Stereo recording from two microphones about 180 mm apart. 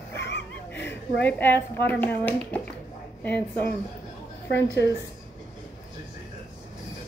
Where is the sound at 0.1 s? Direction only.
75° left (ahead or behind).